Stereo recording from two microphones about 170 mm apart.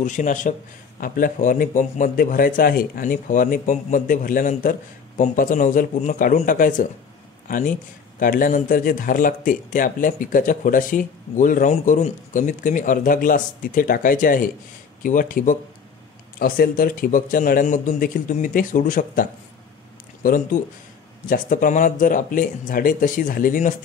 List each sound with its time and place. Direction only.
0.0 s a man's voice: 45° left (ahead or behind)
20.5 s speech: 50° left (ahead or behind)